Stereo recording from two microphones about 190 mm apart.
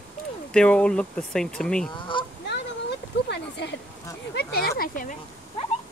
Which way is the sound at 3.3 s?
65° left (ahead or behind).